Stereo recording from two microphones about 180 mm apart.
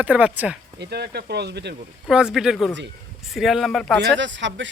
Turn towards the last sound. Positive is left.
turn(degrees=-90)